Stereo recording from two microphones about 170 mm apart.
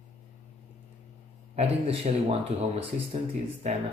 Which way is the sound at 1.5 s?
40° right (ahead or behind).